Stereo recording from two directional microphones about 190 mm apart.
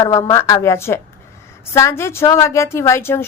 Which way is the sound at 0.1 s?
15° left (ahead or behind).